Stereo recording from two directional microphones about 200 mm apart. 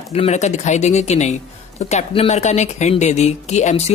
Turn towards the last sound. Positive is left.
turn(degrees=35)  # may be behind; listen again after turning